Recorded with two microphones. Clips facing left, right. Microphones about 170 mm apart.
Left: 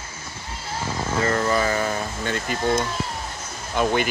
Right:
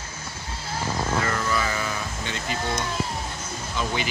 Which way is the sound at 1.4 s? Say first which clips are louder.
Left 5 dB; 40° left (ahead or behind).